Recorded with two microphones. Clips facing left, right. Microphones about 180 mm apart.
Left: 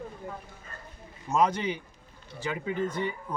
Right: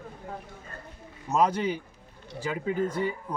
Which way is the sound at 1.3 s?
5° right (ahead or behind).